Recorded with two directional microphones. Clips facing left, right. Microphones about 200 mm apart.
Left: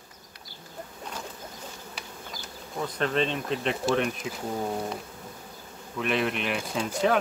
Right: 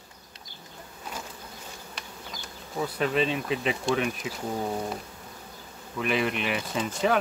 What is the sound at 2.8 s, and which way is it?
Speech, 5° right (ahead or behind).